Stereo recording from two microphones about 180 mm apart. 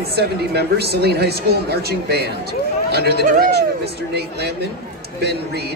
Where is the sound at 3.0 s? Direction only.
65° left (ahead or behind).